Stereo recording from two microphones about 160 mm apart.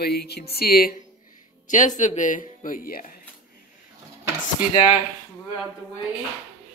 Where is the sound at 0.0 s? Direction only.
85° left.